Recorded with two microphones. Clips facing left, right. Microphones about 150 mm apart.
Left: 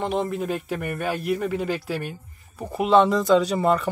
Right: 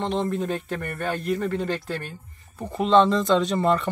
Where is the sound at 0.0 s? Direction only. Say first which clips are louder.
Even; 10° left (ahead or behind).